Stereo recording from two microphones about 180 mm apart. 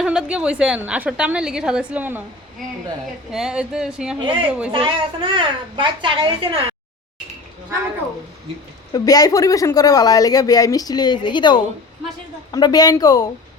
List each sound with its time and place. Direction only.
0.0 s a woman's voice: 5° right (ahead or behind)
3.3 s a woman's voice: 5° right (ahead or behind)
4.2 s a child's voice: 30° right (ahead or behind)
8.9 s speech: 20° left (ahead or behind)